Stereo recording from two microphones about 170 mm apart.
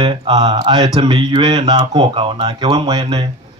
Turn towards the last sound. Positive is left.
turn(degrees=-25)  # may be behind; listen again after turning